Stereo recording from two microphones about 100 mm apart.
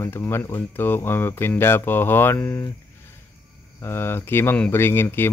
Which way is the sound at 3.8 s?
25° left (ahead or behind).